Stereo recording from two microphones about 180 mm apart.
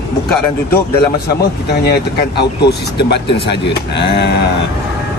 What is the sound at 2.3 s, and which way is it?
Speech, 65° left (ahead or behind).